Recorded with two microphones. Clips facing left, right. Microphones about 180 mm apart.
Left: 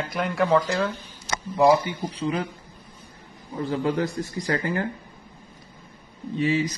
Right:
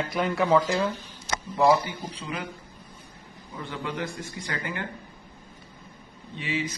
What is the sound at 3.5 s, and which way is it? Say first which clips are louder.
Speech: left 9 dB; 35° left (ahead or behind).